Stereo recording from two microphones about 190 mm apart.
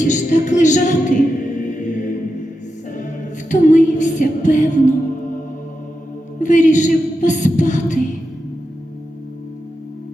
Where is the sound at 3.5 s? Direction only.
40° left (ahead or behind).